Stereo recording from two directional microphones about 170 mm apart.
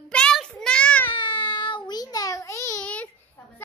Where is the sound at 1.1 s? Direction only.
30° left (ahead or behind); by 3.0 s 10° left (ahead or behind).